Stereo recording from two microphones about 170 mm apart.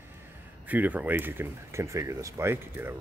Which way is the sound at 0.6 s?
10° right (ahead or behind).